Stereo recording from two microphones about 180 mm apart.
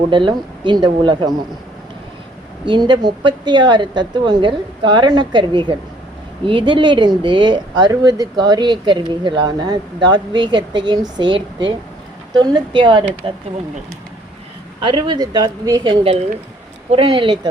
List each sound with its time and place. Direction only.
0.1 s speech: 25° right (ahead or behind)
2.6 s speech: 25° right (ahead or behind)
14.8 s speech: 25° right (ahead or behind)